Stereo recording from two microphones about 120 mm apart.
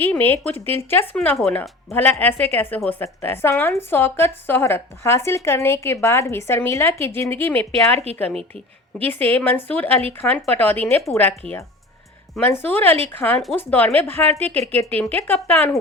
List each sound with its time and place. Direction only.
0.0 s a woman's voice: 15° left (ahead or behind)
1.4 s a woman's voice: 5° left (ahead or behind)
7.7 s a woman's voice: 60° right (ahead or behind)
9.0 s a woman's voice: 15° left (ahead or behind)
12.6 s a woman's voice: 15° left (ahead or behind)